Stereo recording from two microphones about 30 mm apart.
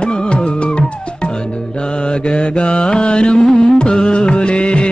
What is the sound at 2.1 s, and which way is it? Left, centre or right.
Mantra, left.